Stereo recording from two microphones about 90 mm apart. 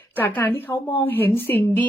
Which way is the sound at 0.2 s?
20° left (ahead or behind).